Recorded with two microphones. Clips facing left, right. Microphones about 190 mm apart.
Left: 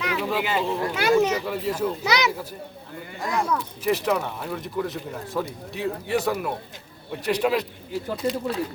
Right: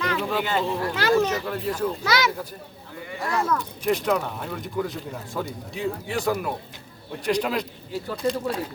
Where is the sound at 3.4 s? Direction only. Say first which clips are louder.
Even; 5° left (ahead or behind).